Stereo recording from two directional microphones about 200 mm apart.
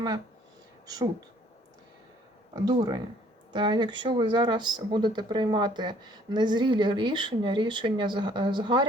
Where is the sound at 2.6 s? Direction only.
20° right (ahead or behind).